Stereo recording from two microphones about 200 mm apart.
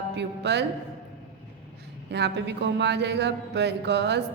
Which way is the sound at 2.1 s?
60° right (ahead or behind).